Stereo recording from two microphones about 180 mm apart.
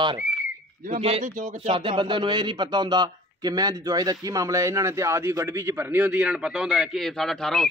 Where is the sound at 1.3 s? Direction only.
45° right (ahead or behind).